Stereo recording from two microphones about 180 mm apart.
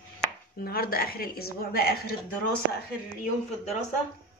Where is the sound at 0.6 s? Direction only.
55° left (ahead or behind).